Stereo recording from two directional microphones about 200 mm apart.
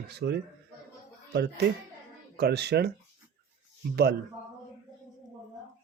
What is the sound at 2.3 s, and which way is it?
Speech, 55° right (ahead or behind).